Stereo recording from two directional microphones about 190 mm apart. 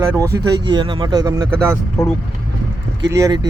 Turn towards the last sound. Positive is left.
turn(degrees=-20)  # may be behind; listen again after turning